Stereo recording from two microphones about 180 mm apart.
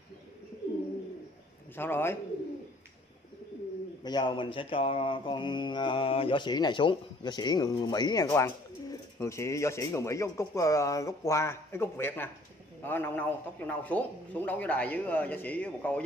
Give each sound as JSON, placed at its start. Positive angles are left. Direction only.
{"t": 1.8, "sound": "a man's voice", "side_deg": 10}
{"t": 4.0, "sound": "mantra", "side_deg": 25}
{"t": 12.8, "sound": "a man's voice", "side_deg": 10}